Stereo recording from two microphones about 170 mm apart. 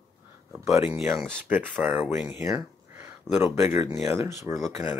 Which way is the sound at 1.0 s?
Centre (ahead or behind).